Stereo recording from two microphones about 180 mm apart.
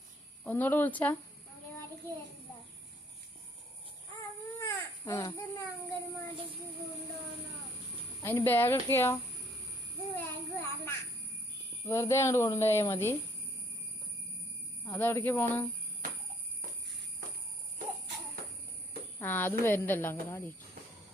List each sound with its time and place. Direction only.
0.4 s speech: 10° left (ahead or behind)
4.6 s a sound: 15° left (ahead or behind)
8.2 s speech: 10° left (ahead or behind)
10.2 s a sound: 15° left (ahead or behind)
11.9 s speech: 15° left (ahead or behind)
14.9 s speech: 10° left (ahead or behind)
19.2 s speech: 10° left (ahead or behind)